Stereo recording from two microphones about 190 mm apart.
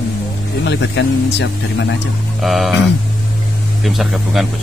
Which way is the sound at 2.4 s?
Centre (ahead or behind).